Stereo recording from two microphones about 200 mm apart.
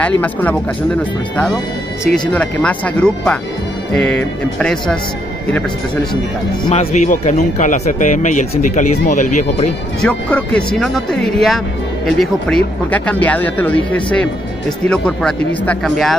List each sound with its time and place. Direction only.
0.0 s speech: 10° left (ahead or behind)
2.0 s speech: 5° left (ahead or behind)
6.6 s speech: 30° left (ahead or behind)
10.0 s speech: 5° left (ahead or behind)